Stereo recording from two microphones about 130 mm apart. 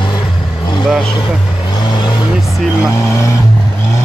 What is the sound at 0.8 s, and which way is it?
Vehicle, centre (ahead or behind).